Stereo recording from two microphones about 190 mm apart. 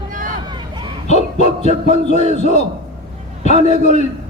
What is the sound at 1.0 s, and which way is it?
Speech, 40° left (ahead or behind).